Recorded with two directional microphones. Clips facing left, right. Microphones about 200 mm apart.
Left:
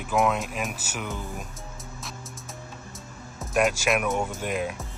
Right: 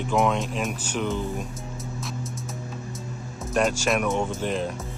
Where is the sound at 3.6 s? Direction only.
5° left (ahead or behind).